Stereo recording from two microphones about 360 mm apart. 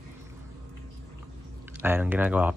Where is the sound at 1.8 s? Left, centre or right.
Centre.